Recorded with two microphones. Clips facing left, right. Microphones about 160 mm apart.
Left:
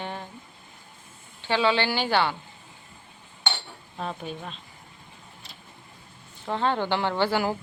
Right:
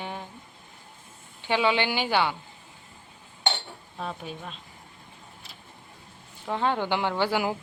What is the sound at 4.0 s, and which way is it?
Speech, 5° right (ahead or behind).